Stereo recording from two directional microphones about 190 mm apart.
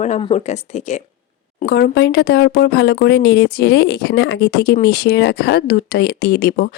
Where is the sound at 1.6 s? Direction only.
55° left (ahead or behind).